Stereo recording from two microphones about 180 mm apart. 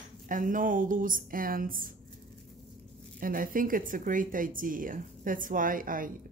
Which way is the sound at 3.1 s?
50° right (ahead or behind).